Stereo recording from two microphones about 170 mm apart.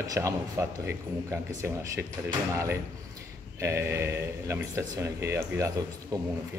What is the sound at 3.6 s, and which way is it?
Speech, 15° right (ahead or behind).